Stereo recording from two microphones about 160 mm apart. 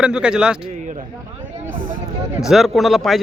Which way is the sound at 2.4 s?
Centre (ahead or behind).